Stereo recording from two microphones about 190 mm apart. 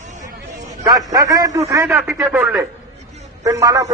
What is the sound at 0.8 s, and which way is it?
A man's voice, 20° right (ahead or behind).